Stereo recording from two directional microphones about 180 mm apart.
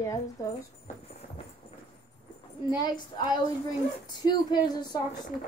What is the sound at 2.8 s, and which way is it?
Speech, 25° left (ahead or behind).